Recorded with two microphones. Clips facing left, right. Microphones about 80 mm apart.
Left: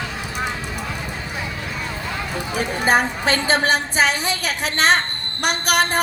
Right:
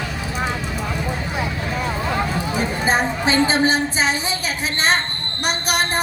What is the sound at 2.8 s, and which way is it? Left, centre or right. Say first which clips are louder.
A woman's voice: left 2 dB; left.